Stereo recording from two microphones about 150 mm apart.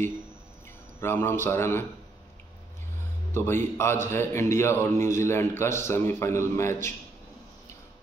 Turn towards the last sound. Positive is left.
turn(degrees=20)  # may be behind; listen again after turning